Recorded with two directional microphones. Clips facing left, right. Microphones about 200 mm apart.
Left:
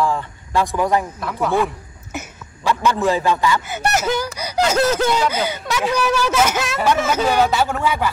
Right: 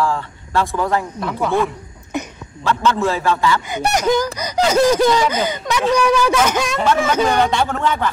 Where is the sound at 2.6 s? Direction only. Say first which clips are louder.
Right 1 dB; 15° left (ahead or behind).